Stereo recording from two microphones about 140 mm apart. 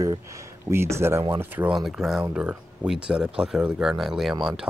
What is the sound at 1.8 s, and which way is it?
Speech, 5° right (ahead or behind).